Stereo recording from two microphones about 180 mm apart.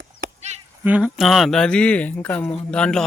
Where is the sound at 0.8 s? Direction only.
5° right (ahead or behind).